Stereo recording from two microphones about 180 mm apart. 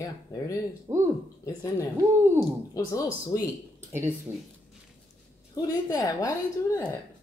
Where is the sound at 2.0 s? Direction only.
15° right (ahead or behind).